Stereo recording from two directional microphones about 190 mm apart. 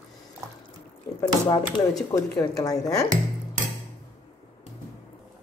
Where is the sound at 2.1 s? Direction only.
15° left (ahead or behind).